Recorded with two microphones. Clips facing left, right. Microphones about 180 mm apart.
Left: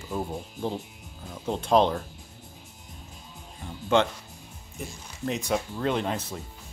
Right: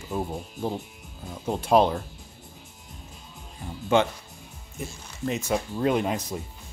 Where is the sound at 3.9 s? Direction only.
10° right (ahead or behind).